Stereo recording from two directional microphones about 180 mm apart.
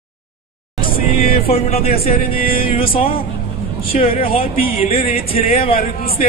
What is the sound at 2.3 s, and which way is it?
Music, 55° left (ahead or behind).